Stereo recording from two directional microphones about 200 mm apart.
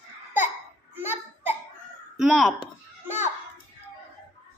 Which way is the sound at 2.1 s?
Centre (ahead or behind).